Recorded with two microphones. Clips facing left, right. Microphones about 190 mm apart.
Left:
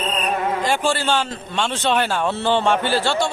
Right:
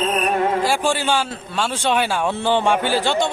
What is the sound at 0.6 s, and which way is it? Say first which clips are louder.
A man's voice: right 1 dB; 10° right (ahead or behind).